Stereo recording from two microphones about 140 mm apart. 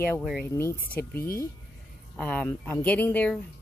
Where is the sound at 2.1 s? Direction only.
5° left (ahead or behind).